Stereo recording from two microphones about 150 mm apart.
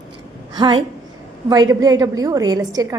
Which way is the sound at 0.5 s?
30° right (ahead or behind).